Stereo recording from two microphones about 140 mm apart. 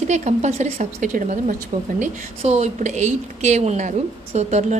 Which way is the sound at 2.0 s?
50° right (ahead or behind).